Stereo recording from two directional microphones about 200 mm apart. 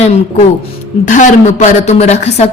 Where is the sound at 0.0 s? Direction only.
35° left (ahead or behind).